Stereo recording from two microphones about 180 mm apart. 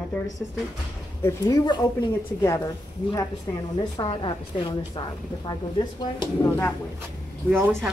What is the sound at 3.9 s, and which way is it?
A woman's voice, 25° left (ahead or behind).